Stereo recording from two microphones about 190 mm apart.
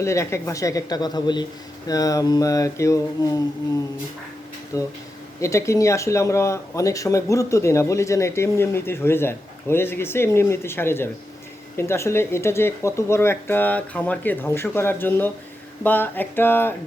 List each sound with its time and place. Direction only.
0.0 s speech: 15° left (ahead or behind)
4.7 s speech: 15° left (ahead or behind)